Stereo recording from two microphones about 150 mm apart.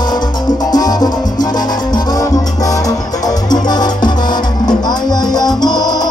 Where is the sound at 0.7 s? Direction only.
25° left (ahead or behind).